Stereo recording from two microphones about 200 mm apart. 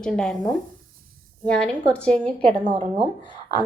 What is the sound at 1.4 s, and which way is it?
A woman's voice, 5° left (ahead or behind).